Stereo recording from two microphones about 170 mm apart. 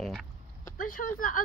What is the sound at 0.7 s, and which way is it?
Speech, 55° left (ahead or behind).